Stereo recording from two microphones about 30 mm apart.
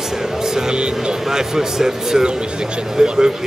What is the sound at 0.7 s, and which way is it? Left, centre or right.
Speech, right.